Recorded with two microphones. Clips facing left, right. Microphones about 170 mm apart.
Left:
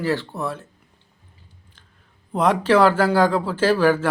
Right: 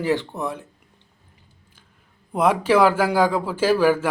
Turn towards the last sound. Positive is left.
turn(degrees=-10)  # may be behind; listen again after turning